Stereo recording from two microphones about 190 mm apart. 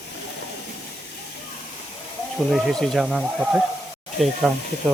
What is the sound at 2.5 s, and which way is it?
Speech, centre (ahead or behind).